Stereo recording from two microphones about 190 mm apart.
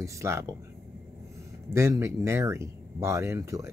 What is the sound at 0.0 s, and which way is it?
Speech, 15° right (ahead or behind).